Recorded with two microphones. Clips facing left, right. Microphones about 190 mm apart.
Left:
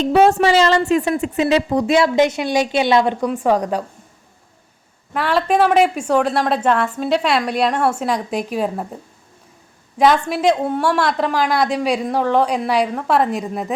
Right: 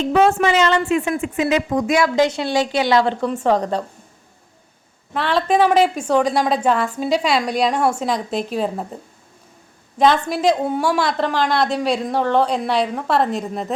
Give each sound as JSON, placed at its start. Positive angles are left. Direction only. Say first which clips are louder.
{"t": 0.0, "sound": "a woman's voice", "louder": "left 2 dB", "side_deg": 35}
{"t": 5.1, "sound": "a woman's voice", "louder": "left 1 dB", "side_deg": 10}
{"t": 10.5, "sound": "a woman's voice", "louder": "left 1 dB", "side_deg": -5}